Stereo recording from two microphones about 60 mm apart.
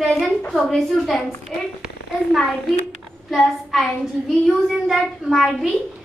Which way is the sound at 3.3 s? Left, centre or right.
Centre.